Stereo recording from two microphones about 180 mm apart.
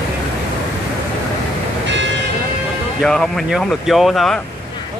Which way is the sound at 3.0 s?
5° left (ahead or behind).